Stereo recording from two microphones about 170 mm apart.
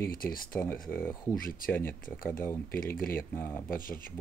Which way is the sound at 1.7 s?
15° left (ahead or behind).